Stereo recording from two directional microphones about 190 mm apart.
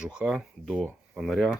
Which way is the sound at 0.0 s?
5° right (ahead or behind).